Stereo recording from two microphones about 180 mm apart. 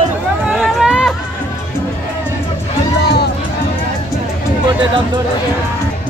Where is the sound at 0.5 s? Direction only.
Centre (ahead or behind).